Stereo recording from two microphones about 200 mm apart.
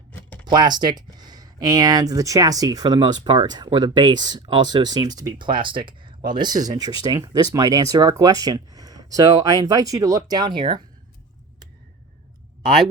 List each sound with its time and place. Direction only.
0.4 s speech: 20° right (ahead or behind)